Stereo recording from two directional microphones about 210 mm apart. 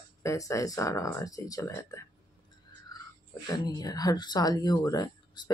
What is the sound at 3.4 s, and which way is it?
Speech, 20° left (ahead or behind).